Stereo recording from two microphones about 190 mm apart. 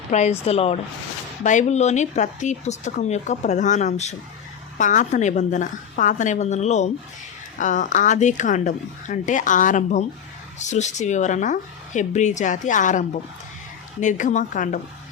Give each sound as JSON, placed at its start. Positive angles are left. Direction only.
{"t": 0.1, "sound": "speech", "side_deg": 35}